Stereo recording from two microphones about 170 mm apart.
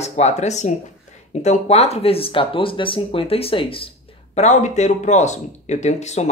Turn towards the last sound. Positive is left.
turn(degrees=40)  # may be behind; listen again after turning